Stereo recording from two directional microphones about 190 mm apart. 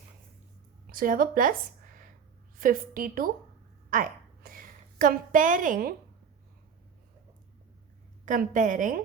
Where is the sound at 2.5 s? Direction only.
45° right (ahead or behind).